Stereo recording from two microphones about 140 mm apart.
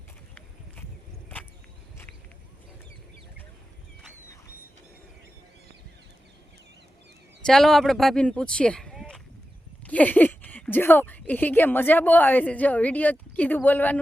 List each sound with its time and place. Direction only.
7.4 s speech: 5° left (ahead or behind)